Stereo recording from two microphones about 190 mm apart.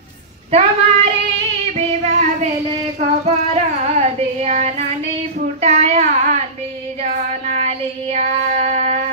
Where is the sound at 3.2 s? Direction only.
35° right (ahead or behind).